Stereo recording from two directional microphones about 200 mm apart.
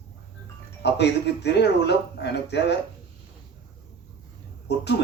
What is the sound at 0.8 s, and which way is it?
Speech, 60° left (ahead or behind).